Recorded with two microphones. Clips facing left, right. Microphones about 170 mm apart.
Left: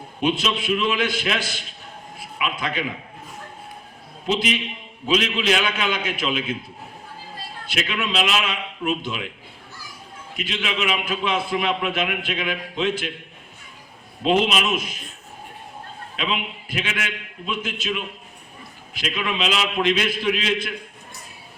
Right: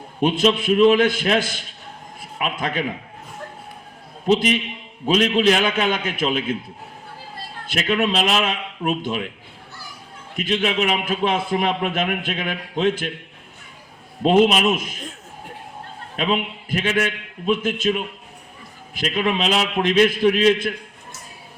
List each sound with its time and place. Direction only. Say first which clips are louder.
0.2 s a man's voice: right 5 dB; 50° right (ahead or behind)
4.3 s a man's voice: right 5 dB; 50° right (ahead or behind)
7.7 s a man's voice: right 6 dB; 50° right (ahead or behind)
10.3 s a man's voice: right 6 dB; 50° right (ahead or behind)
14.2 s a man's voice: right 5 dB; 50° right (ahead or behind)
16.1 s a man's voice: right 5 dB; 50° right (ahead or behind)